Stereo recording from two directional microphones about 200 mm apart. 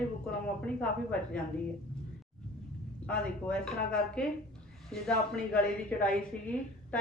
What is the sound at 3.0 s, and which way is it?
A woman's voice, 5° left (ahead or behind).